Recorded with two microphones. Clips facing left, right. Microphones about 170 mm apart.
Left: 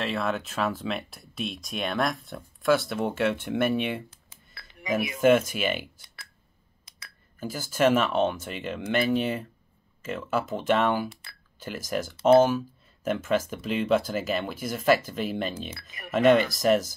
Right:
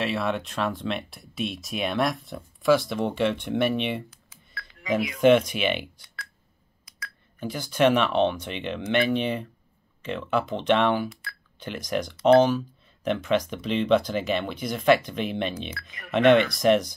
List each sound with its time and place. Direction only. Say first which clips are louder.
0.0 s speech: right 2 dB; centre (ahead or behind)
4.3 s music: right 7 dB; 25° left (ahead or behind)
5.2 s speech: right 2 dB; 5° left (ahead or behind)
7.3 s speech: right 2 dB; 5° left (ahead or behind)
15.8 s speech: right 8 dB; 25° left (ahead or behind)
16.1 s speech: right 2 dB; centre (ahead or behind)